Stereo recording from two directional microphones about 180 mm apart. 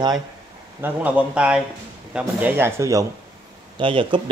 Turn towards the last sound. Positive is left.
turn(degrees=-30)  # may be behind; listen again after turning